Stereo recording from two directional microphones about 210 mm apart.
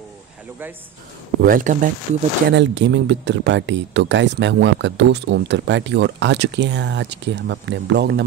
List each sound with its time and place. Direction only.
1.4 s speech: 40° right (ahead or behind)
2.5 s speech: 60° right (ahead or behind)